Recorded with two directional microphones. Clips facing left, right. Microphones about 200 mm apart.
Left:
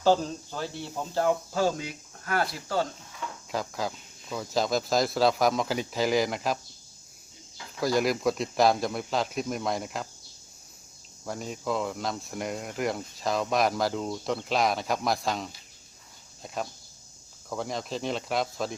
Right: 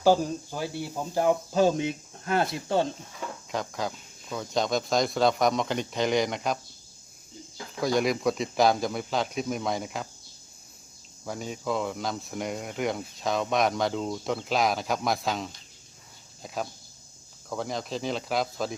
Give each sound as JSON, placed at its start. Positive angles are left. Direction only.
{"t": 0.0, "sound": "speech", "side_deg": -10}
{"t": 3.5, "sound": "speech", "side_deg": 0}
{"t": 7.8, "sound": "speech", "side_deg": 0}
{"t": 11.3, "sound": "speech", "side_deg": 0}
{"t": 17.5, "sound": "speech", "side_deg": 0}